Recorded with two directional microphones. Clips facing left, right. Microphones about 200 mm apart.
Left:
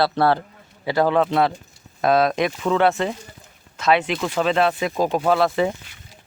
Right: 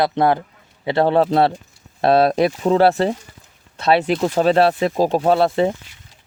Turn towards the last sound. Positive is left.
turn(degrees=-30)  # may be behind; listen again after turning